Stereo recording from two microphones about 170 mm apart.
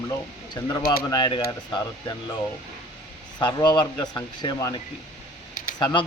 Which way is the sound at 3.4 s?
25° left (ahead or behind).